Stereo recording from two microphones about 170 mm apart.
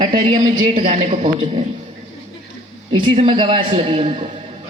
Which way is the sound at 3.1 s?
30° right (ahead or behind).